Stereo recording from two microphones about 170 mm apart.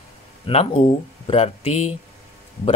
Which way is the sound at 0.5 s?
35° left (ahead or behind).